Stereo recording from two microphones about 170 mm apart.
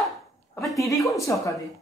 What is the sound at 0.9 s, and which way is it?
Speech, 20° left (ahead or behind).